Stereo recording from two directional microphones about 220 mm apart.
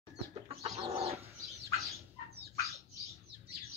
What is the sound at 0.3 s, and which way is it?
Bird, 25° right (ahead or behind).